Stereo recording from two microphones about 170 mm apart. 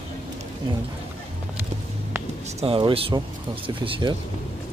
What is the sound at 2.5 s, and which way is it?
Speech, 30° right (ahead or behind).